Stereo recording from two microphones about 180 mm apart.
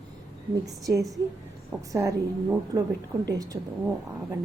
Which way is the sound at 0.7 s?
20° right (ahead or behind).